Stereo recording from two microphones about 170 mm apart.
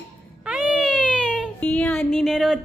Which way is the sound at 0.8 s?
5° left (ahead or behind).